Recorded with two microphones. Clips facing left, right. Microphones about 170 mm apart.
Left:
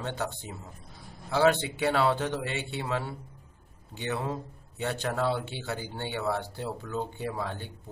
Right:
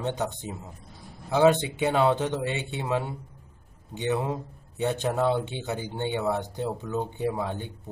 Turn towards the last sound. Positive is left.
turn(degrees=-20)  # may be behind; listen again after turning